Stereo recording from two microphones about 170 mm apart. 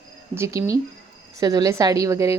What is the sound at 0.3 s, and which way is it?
A woman's voice, 15° right (ahead or behind).